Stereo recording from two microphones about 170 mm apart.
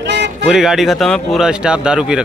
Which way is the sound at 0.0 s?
90° right.